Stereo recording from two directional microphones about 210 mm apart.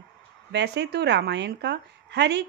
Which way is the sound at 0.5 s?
55° right (ahead or behind).